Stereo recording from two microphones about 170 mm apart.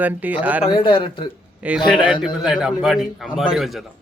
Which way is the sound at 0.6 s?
30° left (ahead or behind).